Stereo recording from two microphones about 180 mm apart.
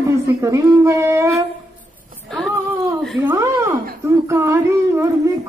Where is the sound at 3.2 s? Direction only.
15° right (ahead or behind).